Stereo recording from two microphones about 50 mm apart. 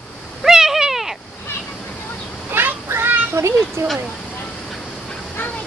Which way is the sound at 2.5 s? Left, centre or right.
Right.